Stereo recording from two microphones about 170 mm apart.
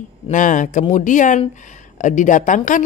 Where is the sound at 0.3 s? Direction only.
50° left (ahead or behind).